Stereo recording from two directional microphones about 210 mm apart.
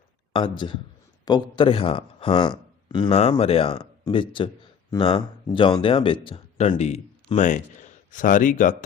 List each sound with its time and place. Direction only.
0.3 s speech: 25° left (ahead or behind); by 8.7 s 40° left (ahead or behind)